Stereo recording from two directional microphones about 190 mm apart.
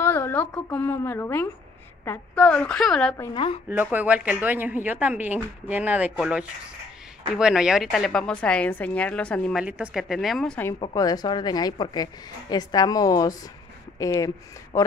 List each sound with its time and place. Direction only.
0.0 s a woman's voice: 10° left (ahead or behind)
3.3 s a woman's voice: 30° left (ahead or behind)
3.6 s a woman's voice: 10° right (ahead or behind)
10.7 s a woman's voice: 20° left (ahead or behind)